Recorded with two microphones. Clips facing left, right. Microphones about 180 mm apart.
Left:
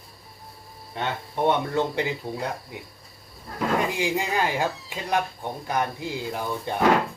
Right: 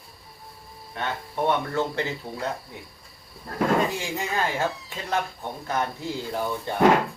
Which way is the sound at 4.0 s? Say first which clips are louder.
Left 3 dB; 15° left (ahead or behind).